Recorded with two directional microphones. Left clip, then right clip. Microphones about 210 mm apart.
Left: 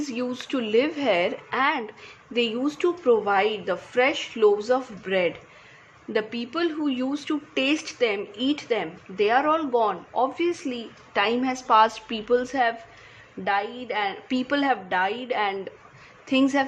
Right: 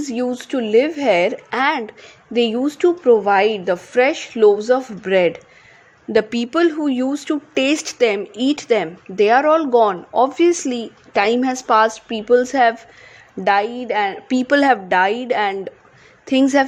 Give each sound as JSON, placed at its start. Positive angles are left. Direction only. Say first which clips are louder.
{"t": 0.0, "sound": "a woman's voice", "louder": "right 7 dB", "side_deg": -25}
{"t": 11.9, "sound": "a woman's voice", "louder": "right 8 dB", "side_deg": -15}